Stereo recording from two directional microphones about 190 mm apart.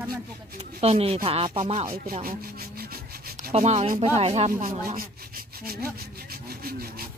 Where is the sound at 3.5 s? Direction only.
35° right (ahead or behind).